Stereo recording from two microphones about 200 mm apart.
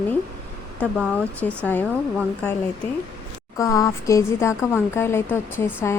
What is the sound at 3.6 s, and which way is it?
Speech, 15° left (ahead or behind).